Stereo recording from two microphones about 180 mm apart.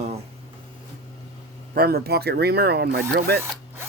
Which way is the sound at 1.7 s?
60° right (ahead or behind).